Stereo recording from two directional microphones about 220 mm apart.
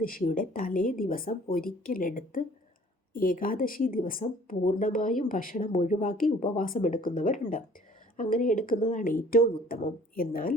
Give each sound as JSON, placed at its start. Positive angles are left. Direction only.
{"t": 0.0, "sound": "speech", "side_deg": 40}